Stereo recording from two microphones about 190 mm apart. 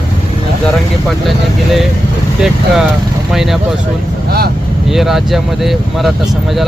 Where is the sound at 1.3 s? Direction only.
Centre (ahead or behind).